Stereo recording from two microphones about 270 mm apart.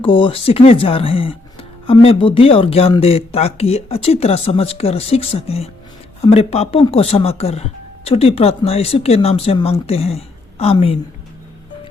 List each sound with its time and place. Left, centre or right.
0.0 s speech: centre